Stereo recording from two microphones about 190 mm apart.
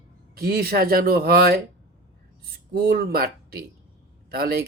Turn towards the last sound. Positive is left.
turn(degrees=-55)  # may be behind; listen again after turning